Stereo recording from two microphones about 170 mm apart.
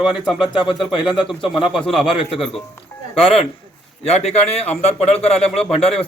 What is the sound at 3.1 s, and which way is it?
A man's voice, 35° left (ahead or behind).